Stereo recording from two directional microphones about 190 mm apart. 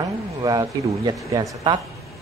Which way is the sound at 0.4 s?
20° right (ahead or behind).